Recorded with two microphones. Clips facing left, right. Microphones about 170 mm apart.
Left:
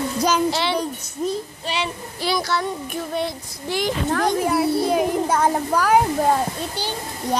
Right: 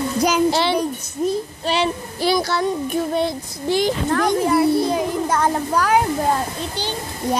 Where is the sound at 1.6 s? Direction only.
35° right (ahead or behind).